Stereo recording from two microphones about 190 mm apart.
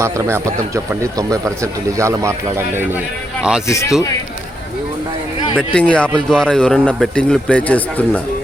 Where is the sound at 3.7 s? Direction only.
15° left (ahead or behind).